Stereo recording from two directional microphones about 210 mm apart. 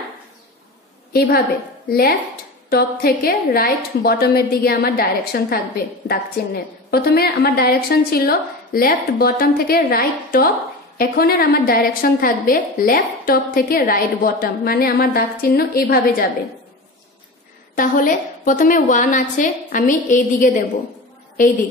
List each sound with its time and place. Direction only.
1.1 s a woman's voice: 45° left (ahead or behind)
17.7 s a woman's voice: 40° left (ahead or behind)